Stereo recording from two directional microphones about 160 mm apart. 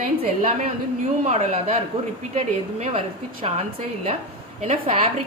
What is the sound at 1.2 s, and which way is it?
A woman's voice, 45° right (ahead or behind).